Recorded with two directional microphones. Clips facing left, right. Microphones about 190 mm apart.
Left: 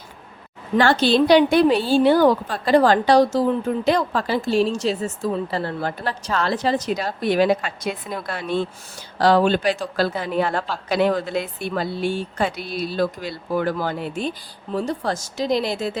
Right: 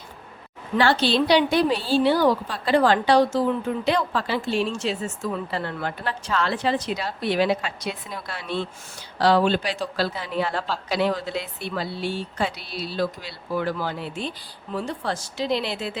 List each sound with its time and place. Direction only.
0.8 s a woman's voice: 50° left (ahead or behind)